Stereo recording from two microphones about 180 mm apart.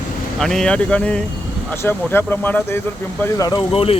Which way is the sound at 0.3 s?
Centre (ahead or behind).